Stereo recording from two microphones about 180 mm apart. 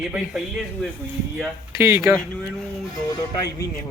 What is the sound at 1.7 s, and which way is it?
Speech, 15° right (ahead or behind).